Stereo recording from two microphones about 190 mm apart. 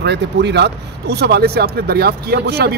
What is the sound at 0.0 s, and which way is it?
Speech, 65° right (ahead or behind).